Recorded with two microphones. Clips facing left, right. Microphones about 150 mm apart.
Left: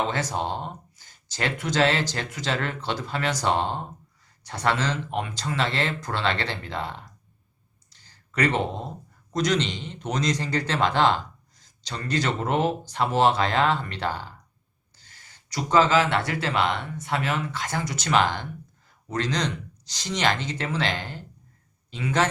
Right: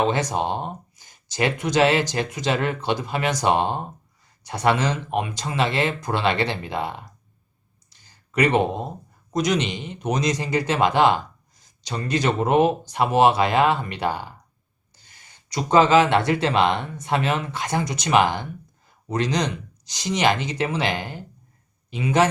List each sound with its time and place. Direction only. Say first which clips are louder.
0.0 s speech: right 5 dB; 15° right (ahead or behind)
7.9 s a sound: right 5 dB; 15° right (ahead or behind)
9.3 s speech: right 2 dB; 15° right (ahead or behind)